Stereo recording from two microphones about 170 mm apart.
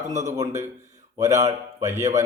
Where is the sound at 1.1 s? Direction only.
20° right (ahead or behind).